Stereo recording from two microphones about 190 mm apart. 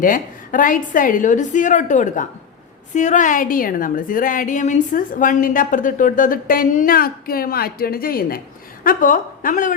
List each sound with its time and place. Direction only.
0.0 s a woman's voice: 45° left (ahead or behind)